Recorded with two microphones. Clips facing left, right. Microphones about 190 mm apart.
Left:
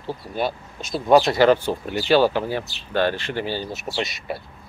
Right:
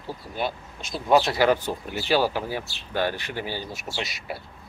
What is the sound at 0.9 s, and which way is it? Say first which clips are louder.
Speech: left 4 dB; 50° left (ahead or behind).